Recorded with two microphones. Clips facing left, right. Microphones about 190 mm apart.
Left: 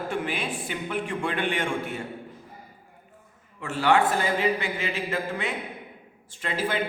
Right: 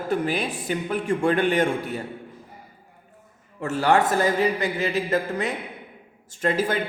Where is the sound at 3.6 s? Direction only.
40° right (ahead or behind).